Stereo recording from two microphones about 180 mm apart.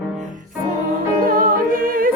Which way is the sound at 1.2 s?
50° right (ahead or behind).